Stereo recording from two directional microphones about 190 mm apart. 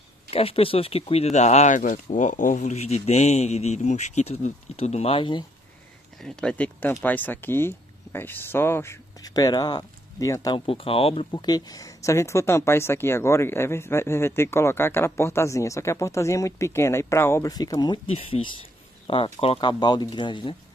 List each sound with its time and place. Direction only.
0.3 s speech: 30° left (ahead or behind)
6.2 s speech: 5° left (ahead or behind); by 20.5 s 25° left (ahead or behind)